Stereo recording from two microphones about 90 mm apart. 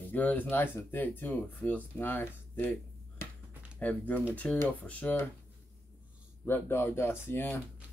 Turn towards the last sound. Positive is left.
turn(degrees=25)  # may be behind; listen again after turning